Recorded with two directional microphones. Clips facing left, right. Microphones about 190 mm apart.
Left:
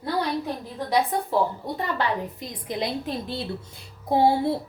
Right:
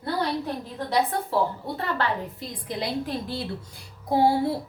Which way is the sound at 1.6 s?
15° left (ahead or behind).